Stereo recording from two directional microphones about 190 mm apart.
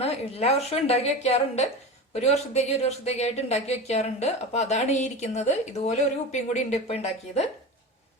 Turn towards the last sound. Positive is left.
turn(degrees=35)  # may be behind; listen again after turning